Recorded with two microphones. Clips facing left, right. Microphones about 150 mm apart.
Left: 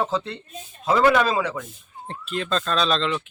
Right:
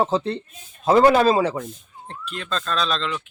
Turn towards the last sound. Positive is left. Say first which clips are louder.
# left 2 dB
turn(degrees=5)  # may be behind; listen again after turning